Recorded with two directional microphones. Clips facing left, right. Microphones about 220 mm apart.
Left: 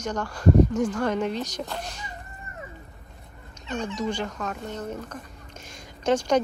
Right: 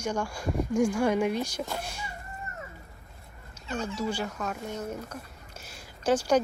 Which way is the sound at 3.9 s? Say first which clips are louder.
Left 2 dB; 5° right (ahead or behind).